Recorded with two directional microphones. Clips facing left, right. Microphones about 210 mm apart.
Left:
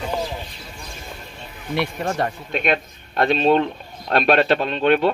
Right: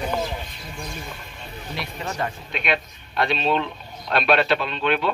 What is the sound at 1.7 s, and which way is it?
A man's voice, 55° left (ahead or behind).